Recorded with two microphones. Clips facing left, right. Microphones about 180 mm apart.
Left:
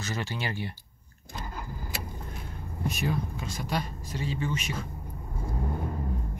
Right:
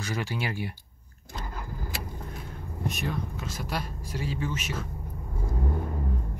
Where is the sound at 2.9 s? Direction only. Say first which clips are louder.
Left 3 dB; centre (ahead or behind).